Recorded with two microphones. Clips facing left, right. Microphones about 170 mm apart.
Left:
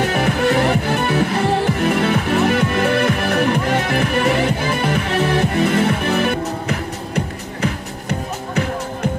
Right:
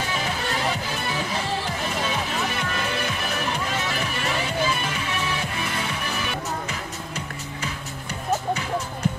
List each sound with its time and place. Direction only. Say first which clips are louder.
0.0 s music: left 11 dB; 60° left (ahead or behind)